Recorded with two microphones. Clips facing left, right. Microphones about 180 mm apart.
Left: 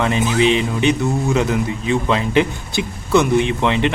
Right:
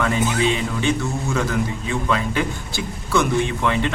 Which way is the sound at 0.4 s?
20° left (ahead or behind).